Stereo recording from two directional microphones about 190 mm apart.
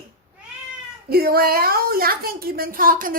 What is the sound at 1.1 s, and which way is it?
A woman's voice, 55° right (ahead or behind).